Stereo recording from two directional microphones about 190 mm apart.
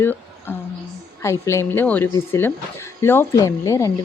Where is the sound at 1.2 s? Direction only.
15° left (ahead or behind).